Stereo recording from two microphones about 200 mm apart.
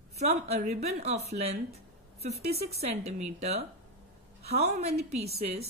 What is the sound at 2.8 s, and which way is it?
Speech, 30° right (ahead or behind).